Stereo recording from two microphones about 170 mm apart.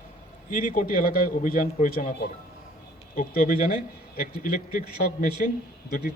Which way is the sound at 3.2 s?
55° left (ahead or behind).